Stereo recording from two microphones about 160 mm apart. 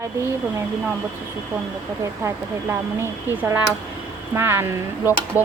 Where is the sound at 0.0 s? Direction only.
20° right (ahead or behind).